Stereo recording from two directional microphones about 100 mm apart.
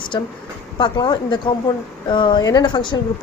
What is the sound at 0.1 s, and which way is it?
A woman's voice, 50° left (ahead or behind).